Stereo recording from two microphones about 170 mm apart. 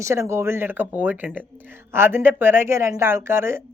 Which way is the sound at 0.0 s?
15° right (ahead or behind).